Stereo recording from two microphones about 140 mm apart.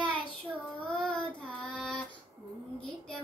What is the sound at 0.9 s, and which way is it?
Child singing, 5° left (ahead or behind).